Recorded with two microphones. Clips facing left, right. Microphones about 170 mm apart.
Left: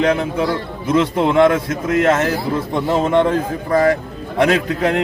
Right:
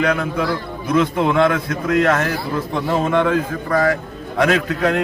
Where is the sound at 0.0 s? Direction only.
25° left (ahead or behind).